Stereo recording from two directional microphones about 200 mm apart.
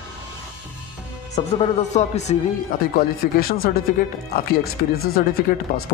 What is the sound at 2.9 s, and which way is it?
Speech, 50° left (ahead or behind).